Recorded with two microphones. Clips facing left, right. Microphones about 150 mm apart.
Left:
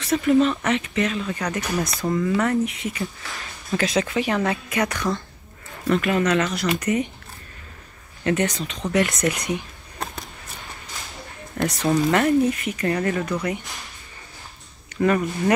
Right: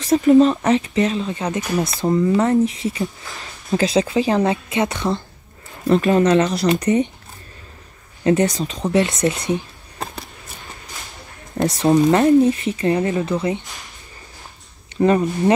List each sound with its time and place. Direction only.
0.0 s speech: 35° right (ahead or behind)
8.2 s speech: 30° right (ahead or behind)
11.5 s speech: 35° right (ahead or behind)
15.0 s speech: 30° right (ahead or behind)